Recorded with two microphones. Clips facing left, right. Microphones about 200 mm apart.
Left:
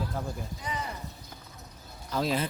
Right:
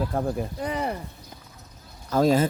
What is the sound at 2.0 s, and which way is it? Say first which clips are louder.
Speech: right 9 dB; 45° right (ahead or behind).